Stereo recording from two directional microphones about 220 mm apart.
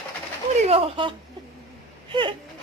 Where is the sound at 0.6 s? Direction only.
25° right (ahead or behind).